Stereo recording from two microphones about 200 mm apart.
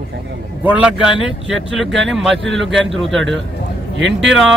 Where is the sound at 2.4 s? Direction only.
65° right (ahead or behind).